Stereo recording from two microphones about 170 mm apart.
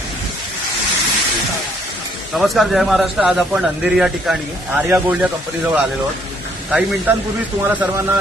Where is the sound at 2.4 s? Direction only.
Centre (ahead or behind).